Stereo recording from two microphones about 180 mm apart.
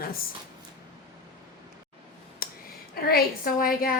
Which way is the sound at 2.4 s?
55° left (ahead or behind).